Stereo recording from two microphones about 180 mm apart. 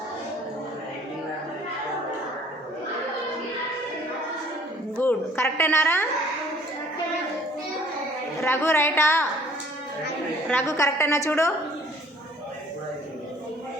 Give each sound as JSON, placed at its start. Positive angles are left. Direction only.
{"t": 4.9, "sound": "a woman's voice", "side_deg": 10}
{"t": 8.4, "sound": "a woman's voice", "side_deg": 15}
{"t": 10.5, "sound": "a woman's voice", "side_deg": 15}